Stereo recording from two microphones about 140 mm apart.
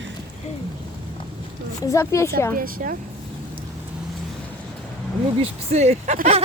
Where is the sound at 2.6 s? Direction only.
90° right.